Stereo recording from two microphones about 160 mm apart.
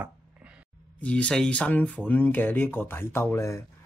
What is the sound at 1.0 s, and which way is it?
Speech, 10° left (ahead or behind).